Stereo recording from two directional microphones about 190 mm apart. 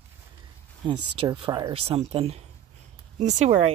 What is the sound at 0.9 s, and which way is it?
Speech, 25° right (ahead or behind).